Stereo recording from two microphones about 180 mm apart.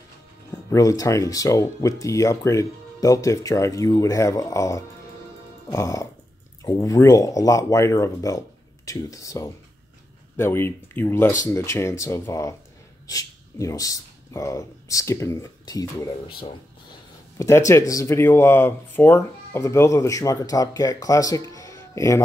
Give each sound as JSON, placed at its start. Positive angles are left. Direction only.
{"t": 0.7, "sound": "speech", "side_deg": 20}
{"t": 17.4, "sound": "speech", "side_deg": 15}